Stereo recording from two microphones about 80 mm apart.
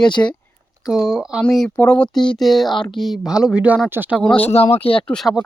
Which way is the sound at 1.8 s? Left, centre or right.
Left.